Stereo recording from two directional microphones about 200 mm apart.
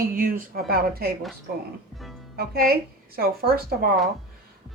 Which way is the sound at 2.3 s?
50° right (ahead or behind).